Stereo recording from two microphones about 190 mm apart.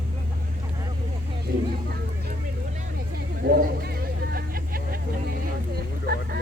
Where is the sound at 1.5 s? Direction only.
55° right (ahead or behind).